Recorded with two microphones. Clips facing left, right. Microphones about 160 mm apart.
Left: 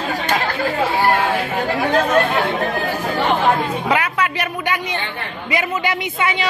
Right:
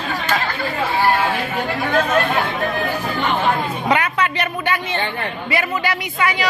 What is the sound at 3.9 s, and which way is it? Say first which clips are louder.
A man's voice: right 2 dB; 5° left (ahead or behind).